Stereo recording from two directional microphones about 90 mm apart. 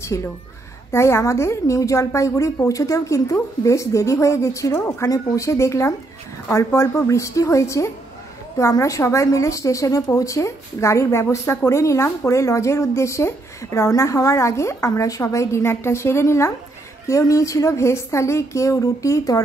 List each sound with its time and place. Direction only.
0.0 s a woman's voice: 30° left (ahead or behind)